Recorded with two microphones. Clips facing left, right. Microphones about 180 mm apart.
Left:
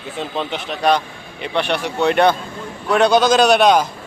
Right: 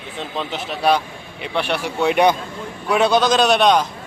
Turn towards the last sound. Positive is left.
turn(degrees=0)  # may be behind; listen again after turning